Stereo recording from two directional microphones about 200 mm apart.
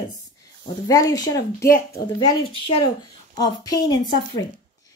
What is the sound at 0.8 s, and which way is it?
Speech, 15° left (ahead or behind).